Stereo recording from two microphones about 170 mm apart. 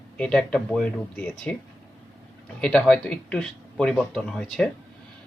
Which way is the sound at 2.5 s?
5° left (ahead or behind).